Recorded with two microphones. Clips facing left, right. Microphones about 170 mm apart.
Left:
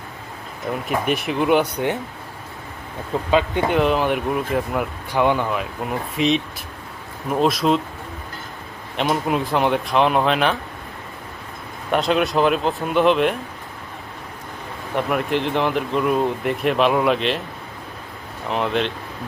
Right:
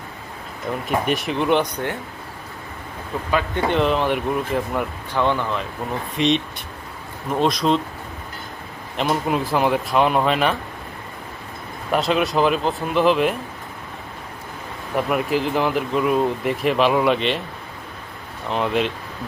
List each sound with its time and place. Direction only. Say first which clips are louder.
0.7 s speech: even; centre (ahead or behind)
1.7 s speech: left 4 dB; 15° left (ahead or behind)
3.1 s a man's voice: left 4 dB; 25° left (ahead or behind)
3.7 s speech: right 1 dB; 5° left (ahead or behind)
9.0 s speech: even; centre (ahead or behind)
11.9 s speech: left 1 dB; centre (ahead or behind)
14.9 s speech: even; 5° right (ahead or behind)
18.4 s speech: even; centre (ahead or behind)